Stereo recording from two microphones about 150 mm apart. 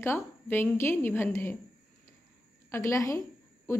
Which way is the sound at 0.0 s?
15° left (ahead or behind).